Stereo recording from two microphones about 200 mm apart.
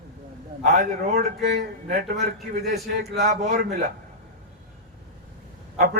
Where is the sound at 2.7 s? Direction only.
50° right (ahead or behind).